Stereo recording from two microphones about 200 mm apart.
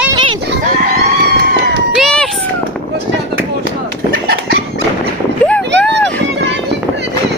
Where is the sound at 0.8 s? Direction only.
50° right (ahead or behind).